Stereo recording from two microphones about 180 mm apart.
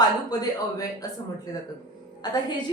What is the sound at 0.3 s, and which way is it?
Speech, 20° left (ahead or behind).